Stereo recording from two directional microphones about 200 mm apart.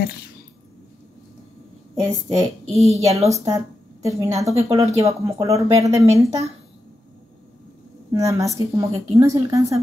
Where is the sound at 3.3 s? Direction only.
15° right (ahead or behind).